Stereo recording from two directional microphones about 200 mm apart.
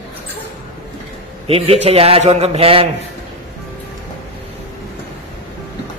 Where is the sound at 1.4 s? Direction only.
30° right (ahead or behind).